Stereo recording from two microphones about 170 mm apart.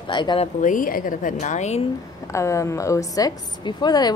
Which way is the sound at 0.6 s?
50° left (ahead or behind).